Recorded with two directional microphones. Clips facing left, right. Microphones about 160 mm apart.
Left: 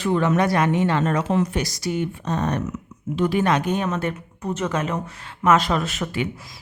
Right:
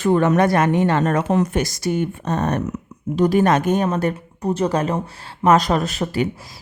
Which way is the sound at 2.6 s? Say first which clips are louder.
Right 3 dB; 40° right (ahead or behind).